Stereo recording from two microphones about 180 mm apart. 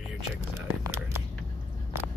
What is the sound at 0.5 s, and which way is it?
Speech, 15° right (ahead or behind).